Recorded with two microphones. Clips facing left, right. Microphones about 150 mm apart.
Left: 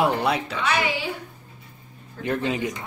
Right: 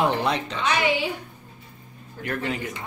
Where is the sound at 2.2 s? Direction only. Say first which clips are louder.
Left 4 dB; 20° left (ahead or behind).